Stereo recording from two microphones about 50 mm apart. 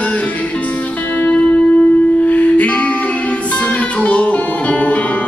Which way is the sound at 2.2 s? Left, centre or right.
Left.